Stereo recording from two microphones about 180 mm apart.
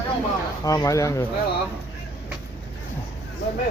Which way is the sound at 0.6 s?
20° left (ahead or behind).